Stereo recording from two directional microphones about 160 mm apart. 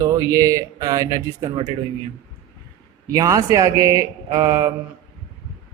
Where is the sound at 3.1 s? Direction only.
20° right (ahead or behind).